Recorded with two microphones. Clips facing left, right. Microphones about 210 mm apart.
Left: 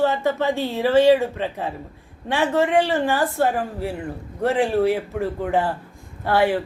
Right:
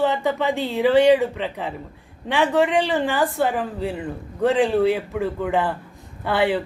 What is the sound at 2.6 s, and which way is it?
A woman's voice, 15° right (ahead or behind).